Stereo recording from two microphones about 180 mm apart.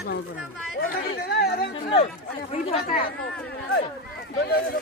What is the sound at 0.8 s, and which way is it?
Chatter, 60° left (ahead or behind).